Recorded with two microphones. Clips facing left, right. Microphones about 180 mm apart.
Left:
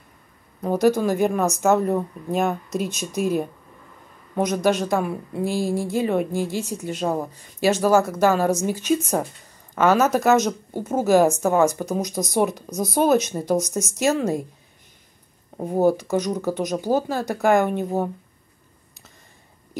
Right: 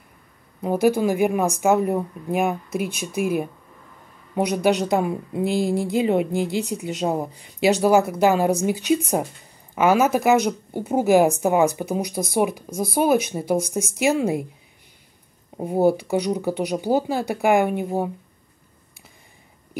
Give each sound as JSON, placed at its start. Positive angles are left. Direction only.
{"t": 0.6, "sound": "speech", "side_deg": -10}
{"t": 4.6, "sound": "speech", "side_deg": -15}
{"t": 12.1, "sound": "speech", "side_deg": 15}
{"t": 12.4, "sound": "speech", "side_deg": -10}
{"t": 15.5, "sound": "speech", "side_deg": -10}